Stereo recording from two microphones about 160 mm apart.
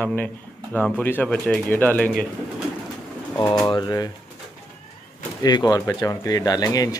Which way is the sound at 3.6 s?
25° left (ahead or behind).